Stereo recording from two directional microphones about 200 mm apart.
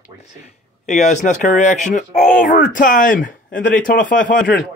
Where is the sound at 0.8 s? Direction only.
40° left (ahead or behind).